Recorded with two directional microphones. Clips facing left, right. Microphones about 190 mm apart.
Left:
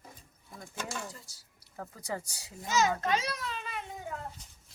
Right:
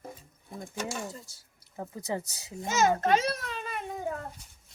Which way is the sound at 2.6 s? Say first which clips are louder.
Right 3 dB; 50° right (ahead or behind).